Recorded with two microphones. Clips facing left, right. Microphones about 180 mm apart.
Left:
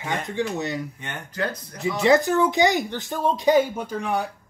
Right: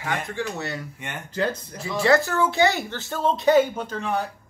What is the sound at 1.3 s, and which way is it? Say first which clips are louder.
Speech: right 3 dB; 25° right (ahead or behind).